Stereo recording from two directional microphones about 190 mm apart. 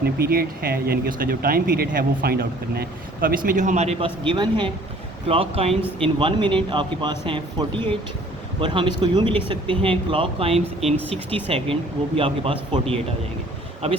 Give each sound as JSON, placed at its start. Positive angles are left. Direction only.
{"t": 0.0, "sound": "speech", "side_deg": -55}